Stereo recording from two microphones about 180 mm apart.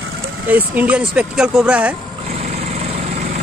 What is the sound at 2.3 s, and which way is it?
Vehicle, 35° right (ahead or behind).